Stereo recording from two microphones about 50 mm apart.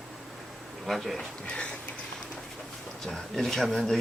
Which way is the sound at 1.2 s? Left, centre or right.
Centre.